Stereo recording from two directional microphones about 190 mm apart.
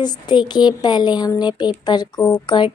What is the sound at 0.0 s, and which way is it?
A woman's voice, 25° left (ahead or behind).